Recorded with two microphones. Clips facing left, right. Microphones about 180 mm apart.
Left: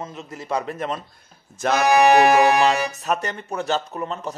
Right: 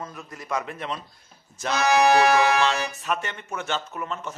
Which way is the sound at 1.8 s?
15° left (ahead or behind).